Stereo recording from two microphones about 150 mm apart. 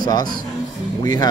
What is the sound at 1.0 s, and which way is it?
Speech, 25° left (ahead or behind).